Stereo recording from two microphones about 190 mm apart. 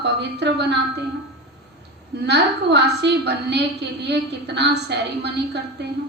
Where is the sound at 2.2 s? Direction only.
65° right (ahead or behind).